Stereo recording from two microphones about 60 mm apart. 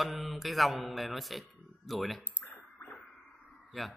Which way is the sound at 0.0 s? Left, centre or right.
Centre.